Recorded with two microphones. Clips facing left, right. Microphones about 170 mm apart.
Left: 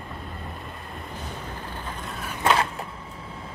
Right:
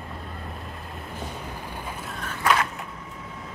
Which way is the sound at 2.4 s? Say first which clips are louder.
Left 1 dB; 30° left (ahead or behind).